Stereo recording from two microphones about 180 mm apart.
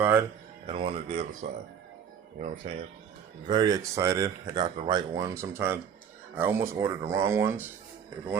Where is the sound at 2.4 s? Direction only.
40° right (ahead or behind).